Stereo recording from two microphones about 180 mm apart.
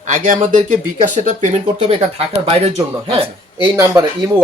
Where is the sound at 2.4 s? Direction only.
35° right (ahead or behind).